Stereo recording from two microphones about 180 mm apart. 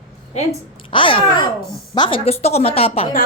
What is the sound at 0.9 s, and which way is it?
A woman's voice, 30° left (ahead or behind).